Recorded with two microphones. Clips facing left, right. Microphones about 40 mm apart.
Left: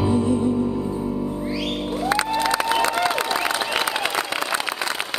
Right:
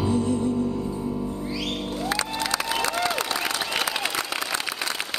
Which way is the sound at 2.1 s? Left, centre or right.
Left.